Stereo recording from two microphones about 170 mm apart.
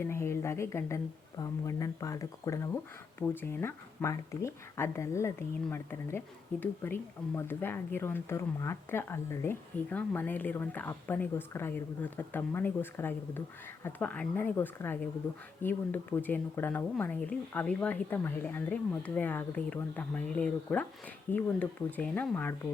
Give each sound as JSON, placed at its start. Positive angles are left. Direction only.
{"t": 0.0, "sound": "speech", "side_deg": 15}